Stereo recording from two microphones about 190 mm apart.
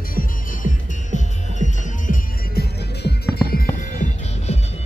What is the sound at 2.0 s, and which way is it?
Music, 55° left (ahead or behind).